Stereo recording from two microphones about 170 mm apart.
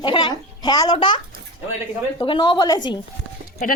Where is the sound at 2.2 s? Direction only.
25° left (ahead or behind).